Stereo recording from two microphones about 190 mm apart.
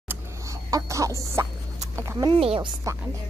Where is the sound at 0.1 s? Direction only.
15° right (ahead or behind).